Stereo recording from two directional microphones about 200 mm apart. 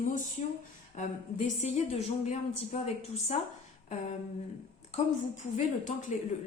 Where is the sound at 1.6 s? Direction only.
30° left (ahead or behind).